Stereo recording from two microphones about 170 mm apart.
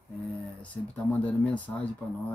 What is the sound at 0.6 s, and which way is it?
Speech, 10° left (ahead or behind).